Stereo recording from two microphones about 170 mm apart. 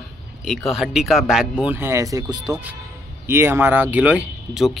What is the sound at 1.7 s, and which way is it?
Speech, 15° right (ahead or behind).